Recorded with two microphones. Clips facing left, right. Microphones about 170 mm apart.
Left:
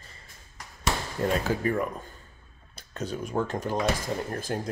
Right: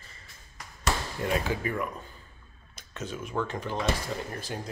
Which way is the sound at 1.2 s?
40° left (ahead or behind).